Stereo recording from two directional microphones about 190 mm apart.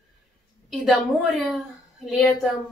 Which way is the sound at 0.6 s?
Centre (ahead or behind).